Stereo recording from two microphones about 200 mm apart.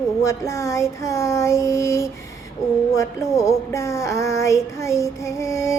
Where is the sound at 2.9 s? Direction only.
15° left (ahead or behind).